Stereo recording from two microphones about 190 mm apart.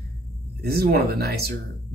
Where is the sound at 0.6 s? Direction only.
55° right (ahead or behind).